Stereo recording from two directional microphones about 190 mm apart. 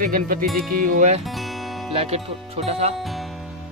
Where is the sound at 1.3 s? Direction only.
Centre (ahead or behind).